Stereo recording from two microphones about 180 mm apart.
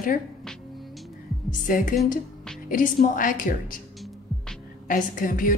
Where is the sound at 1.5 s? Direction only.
45° left (ahead or behind).